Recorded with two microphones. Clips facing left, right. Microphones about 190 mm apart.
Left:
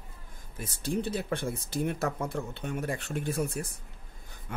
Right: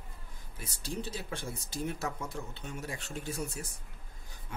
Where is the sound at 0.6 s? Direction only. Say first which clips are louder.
Left 7 dB; 55° left (ahead or behind).